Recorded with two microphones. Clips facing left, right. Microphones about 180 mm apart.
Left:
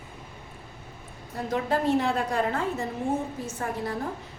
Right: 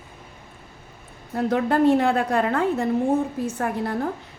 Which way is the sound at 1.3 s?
65° right (ahead or behind).